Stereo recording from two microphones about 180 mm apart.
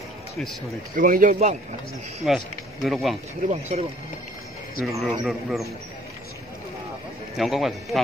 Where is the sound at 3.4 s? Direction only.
40° right (ahead or behind).